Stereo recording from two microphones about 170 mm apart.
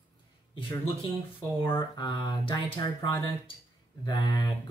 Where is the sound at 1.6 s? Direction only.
30° left (ahead or behind).